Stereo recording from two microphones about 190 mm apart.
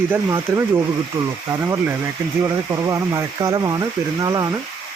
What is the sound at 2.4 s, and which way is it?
Speech, 15° right (ahead or behind).